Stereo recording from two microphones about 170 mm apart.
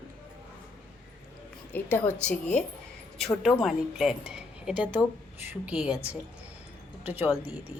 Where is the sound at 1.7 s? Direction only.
10° left (ahead or behind); by 6.0 s 5° right (ahead or behind).